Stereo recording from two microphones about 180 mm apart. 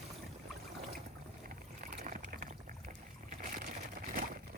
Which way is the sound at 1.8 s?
50° right (ahead or behind).